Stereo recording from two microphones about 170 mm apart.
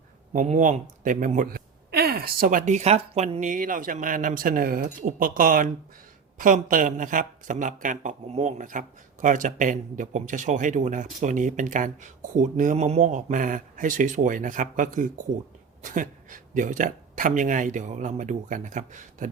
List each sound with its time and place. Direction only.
0.3 s a man's voice: 50° right (ahead or behind)